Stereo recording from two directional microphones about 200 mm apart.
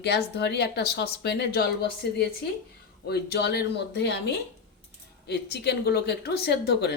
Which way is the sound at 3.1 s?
55° left (ahead or behind).